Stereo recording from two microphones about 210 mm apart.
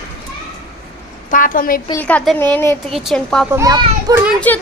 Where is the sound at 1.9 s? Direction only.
5° left (ahead or behind).